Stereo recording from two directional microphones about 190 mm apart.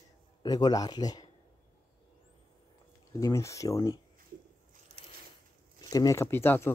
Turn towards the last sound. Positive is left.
turn(degrees=10)  # may be behind; listen again after turning